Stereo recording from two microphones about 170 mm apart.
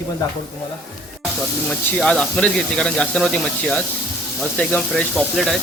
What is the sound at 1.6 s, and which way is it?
Speech, 5° left (ahead or behind).